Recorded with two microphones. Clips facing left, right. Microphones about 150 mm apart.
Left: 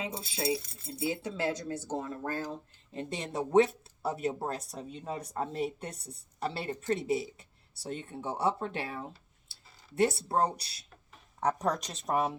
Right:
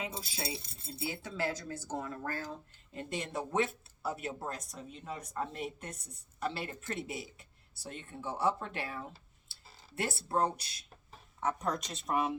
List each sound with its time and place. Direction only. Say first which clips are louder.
0.2 s speech: left 4 dB; 25° left (ahead or behind)
0.4 s speech: left 9 dB; 30° right (ahead or behind)
1.0 s speech: left 4 dB; 20° left (ahead or behind)
7.8 s speech: left 6 dB; 30° left (ahead or behind)